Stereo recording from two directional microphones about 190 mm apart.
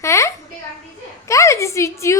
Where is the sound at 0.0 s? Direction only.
15° left (ahead or behind).